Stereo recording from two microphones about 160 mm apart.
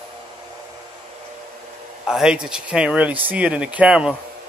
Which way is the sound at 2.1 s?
5° right (ahead or behind).